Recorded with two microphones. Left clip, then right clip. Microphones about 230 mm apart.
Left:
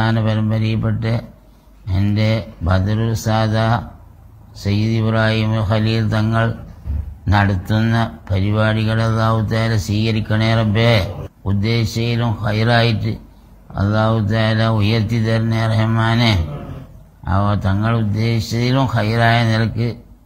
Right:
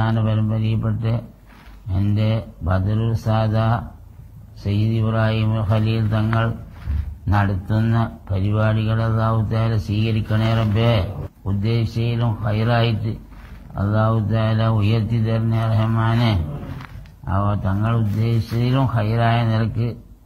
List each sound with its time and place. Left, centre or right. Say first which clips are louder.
0.0 s speech: left 4 dB; left